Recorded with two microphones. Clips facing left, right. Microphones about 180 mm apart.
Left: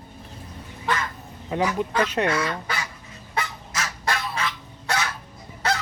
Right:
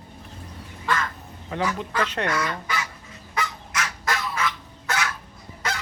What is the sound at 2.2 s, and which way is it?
Speech, 30° left (ahead or behind).